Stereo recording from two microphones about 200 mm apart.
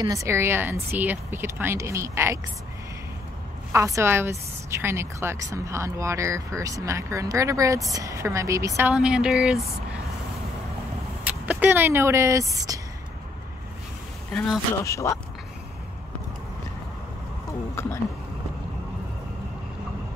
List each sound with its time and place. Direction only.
0.0 s a woman's voice: 15° right (ahead or behind)
3.7 s a woman's voice: 15° right (ahead or behind)
11.2 s speech: 10° right (ahead or behind)
14.3 s speech: centre (ahead or behind)
14.9 s speech: 15° left (ahead or behind)
17.5 s speech: 15° left (ahead or behind)